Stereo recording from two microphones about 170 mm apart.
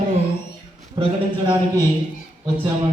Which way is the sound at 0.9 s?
30° right (ahead or behind).